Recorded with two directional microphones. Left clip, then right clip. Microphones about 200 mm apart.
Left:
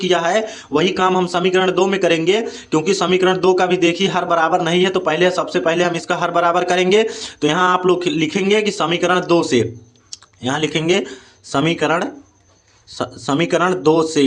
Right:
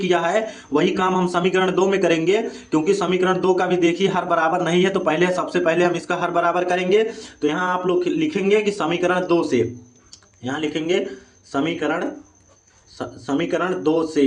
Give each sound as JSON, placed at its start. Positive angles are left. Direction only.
{"t": 0.1, "sound": "speech", "side_deg": 20}
{"t": 10.1, "sound": "a sound", "side_deg": 40}
{"t": 11.4, "sound": "speech", "side_deg": 40}